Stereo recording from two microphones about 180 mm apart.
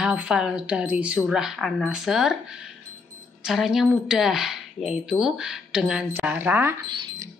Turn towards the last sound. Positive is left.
turn(degrees=-25)  # may be behind; listen again after turning